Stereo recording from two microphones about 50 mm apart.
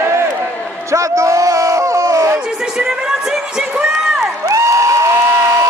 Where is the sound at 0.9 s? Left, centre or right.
Right.